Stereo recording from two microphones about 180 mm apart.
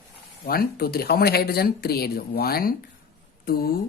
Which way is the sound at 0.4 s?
55° left (ahead or behind).